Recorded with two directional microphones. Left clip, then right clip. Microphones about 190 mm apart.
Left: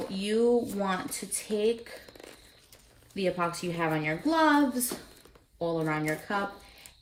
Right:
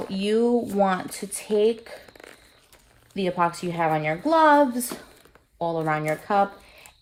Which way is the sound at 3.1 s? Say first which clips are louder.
Right 6 dB; 50° right (ahead or behind).